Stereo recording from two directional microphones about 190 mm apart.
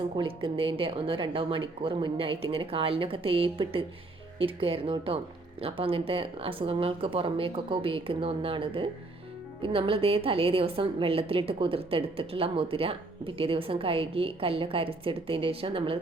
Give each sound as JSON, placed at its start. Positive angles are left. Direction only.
{"t": 0.2, "sound": "a woman's voice", "side_deg": -30}